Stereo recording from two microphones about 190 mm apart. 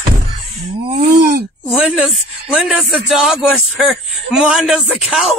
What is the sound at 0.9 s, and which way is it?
Speech, 55° right (ahead or behind).